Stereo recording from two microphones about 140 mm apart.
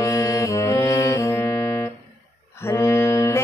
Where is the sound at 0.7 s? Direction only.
20° left (ahead or behind).